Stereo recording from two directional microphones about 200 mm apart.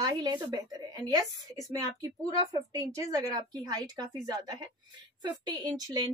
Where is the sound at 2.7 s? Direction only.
15° right (ahead or behind).